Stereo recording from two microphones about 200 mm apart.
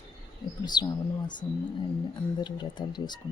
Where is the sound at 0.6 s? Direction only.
20° left (ahead or behind).